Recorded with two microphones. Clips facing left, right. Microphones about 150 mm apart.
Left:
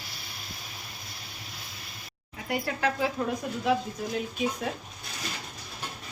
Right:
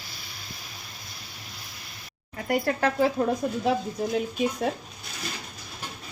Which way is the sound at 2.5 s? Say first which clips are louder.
Right 4 dB; 50° right (ahead or behind).